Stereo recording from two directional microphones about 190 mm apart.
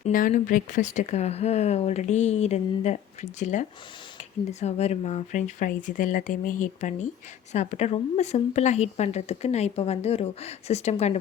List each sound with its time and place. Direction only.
0.0 s speech: 45° left (ahead or behind)